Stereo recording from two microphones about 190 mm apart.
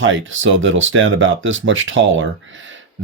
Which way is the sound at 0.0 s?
90° right.